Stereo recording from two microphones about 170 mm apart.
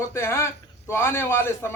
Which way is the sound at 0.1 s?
15° left (ahead or behind).